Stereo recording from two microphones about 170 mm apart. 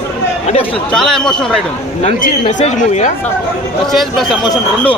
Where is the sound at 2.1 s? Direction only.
45° left (ahead or behind).